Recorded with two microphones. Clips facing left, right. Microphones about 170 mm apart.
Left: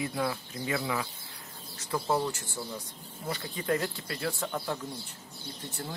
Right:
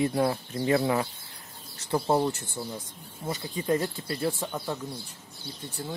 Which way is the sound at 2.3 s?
55° right (ahead or behind).